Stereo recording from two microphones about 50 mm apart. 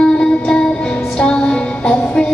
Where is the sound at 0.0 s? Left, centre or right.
Centre.